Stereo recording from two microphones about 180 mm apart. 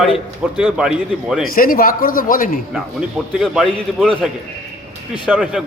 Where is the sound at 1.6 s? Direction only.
50° left (ahead or behind).